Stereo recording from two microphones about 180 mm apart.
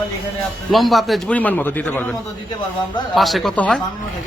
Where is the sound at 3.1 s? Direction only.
Centre (ahead or behind).